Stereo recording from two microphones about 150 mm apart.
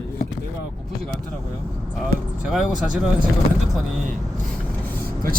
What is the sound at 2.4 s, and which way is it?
Speech, 5° right (ahead or behind).